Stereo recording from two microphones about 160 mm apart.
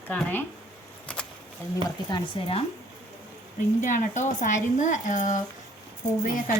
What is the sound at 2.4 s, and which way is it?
Speech, 35° left (ahead or behind).